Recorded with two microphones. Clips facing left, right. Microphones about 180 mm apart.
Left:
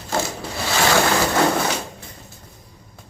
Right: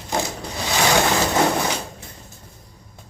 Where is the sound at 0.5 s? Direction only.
20° right (ahead or behind).